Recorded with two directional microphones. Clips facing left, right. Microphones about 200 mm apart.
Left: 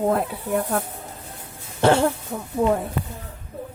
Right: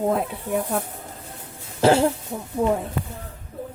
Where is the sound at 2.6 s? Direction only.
10° right (ahead or behind).